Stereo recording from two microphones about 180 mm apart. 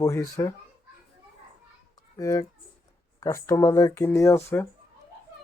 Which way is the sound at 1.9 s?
20° left (ahead or behind).